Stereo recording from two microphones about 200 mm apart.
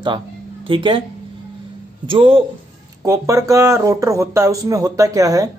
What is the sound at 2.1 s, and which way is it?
Speech, 25° right (ahead or behind).